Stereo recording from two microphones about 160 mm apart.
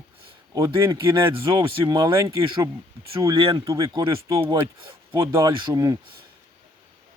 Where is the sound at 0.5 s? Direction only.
20° right (ahead or behind).